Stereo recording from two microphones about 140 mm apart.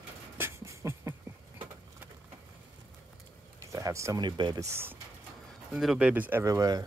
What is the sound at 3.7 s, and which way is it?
Speech, 20° right (ahead or behind).